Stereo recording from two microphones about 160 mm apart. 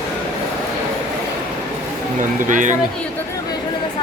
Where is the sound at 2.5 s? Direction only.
55° right (ahead or behind).